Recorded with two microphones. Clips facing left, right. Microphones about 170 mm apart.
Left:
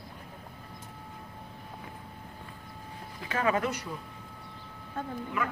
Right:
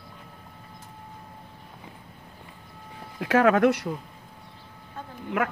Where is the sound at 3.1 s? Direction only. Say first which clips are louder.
Right 9 dB; 80° right.